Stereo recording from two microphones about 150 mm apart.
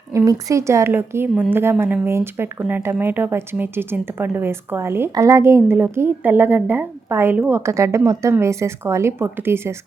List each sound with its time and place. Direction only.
0.3 s speech: 20° right (ahead or behind)